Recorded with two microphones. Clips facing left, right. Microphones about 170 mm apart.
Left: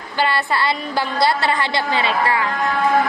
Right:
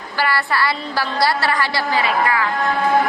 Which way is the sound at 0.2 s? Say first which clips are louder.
Even; 20° left (ahead or behind).